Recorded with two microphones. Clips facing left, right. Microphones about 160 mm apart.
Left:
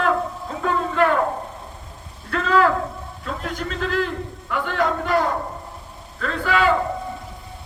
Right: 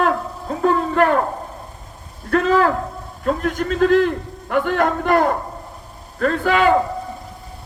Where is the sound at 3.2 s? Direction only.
50° right (ahead or behind).